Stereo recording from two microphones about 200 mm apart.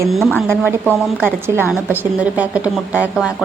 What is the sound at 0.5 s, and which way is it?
A woman's voice, 10° right (ahead or behind).